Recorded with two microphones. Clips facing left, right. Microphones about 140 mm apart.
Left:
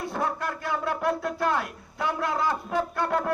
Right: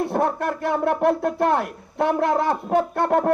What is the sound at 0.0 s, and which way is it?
A man's voice, 60° right (ahead or behind).